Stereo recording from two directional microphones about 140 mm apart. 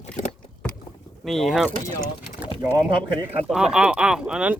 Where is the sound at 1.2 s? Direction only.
Centre (ahead or behind).